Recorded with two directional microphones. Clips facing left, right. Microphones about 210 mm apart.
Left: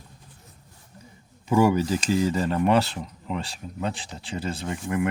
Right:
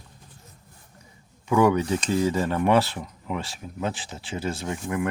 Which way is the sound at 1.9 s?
Centre (ahead or behind).